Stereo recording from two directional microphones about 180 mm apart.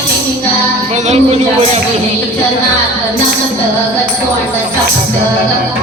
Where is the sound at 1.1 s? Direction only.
40° right (ahead or behind).